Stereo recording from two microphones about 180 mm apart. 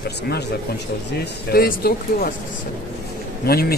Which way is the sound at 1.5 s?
60° left (ahead or behind).